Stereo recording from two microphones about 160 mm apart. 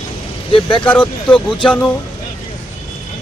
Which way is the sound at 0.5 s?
30° left (ahead or behind).